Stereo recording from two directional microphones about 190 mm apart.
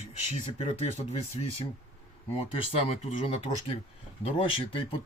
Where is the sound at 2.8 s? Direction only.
30° left (ahead or behind).